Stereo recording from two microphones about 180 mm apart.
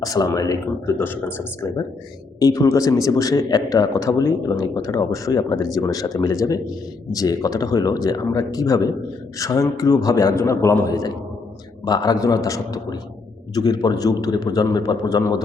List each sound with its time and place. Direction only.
0.0 s a man's voice: 20° left (ahead or behind)